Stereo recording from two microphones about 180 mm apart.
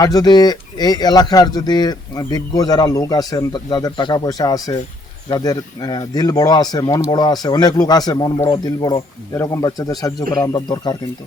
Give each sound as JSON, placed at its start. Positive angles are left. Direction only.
{"t": 0.0, "sound": "speech", "side_deg": 20}